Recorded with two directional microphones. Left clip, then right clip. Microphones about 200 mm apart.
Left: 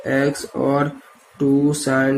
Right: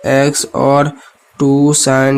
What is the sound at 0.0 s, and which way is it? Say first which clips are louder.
Speech: right 8 dB; 55° right (ahead or behind).